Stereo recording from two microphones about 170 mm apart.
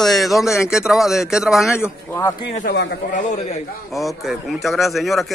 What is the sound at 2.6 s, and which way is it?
Speech, 70° left (ahead or behind).